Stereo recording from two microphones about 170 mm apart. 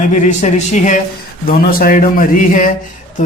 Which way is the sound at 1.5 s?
60° left (ahead or behind).